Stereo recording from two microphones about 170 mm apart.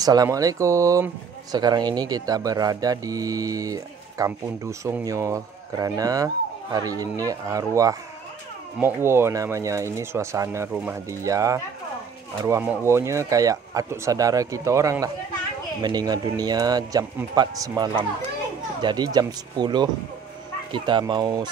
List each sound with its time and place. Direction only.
0.0 s speech: 20° right (ahead or behind)